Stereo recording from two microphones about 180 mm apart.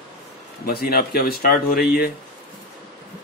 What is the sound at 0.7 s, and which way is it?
Speech, 60° left (ahead or behind).